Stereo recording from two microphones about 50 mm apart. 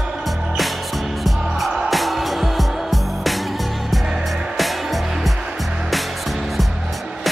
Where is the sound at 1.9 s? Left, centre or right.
Centre.